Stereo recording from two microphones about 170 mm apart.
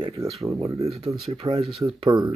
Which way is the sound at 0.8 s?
35° right (ahead or behind).